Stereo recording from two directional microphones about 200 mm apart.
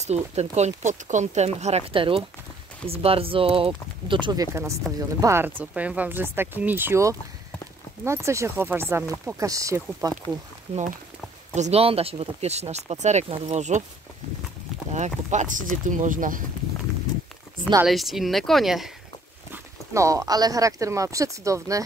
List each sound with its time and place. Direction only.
0.0 s speech: 35° right (ahead or behind); by 10.1 s 15° right (ahead or behind)
11.5 s speech: 35° right (ahead or behind)
14.9 s speech: 35° right (ahead or behind)
17.8 s speech: centre (ahead or behind)
19.5 s speech: 15° right (ahead or behind)